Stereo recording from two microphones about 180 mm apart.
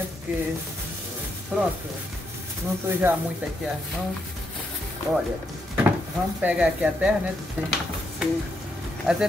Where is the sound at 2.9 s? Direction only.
10° right (ahead or behind).